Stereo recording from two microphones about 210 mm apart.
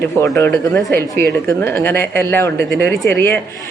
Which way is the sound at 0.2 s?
10° left (ahead or behind).